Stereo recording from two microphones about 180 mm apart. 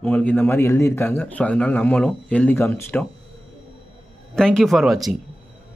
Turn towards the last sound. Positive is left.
turn(degrees=0)  # may be behind; listen again after turning